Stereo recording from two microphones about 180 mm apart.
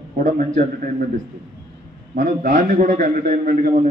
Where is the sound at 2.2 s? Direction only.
45° right (ahead or behind).